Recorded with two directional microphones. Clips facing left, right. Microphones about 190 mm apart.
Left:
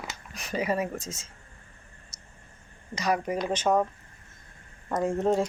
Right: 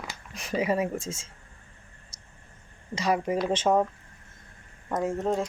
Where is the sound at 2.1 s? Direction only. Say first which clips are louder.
Left 1 dB; 30° right (ahead or behind).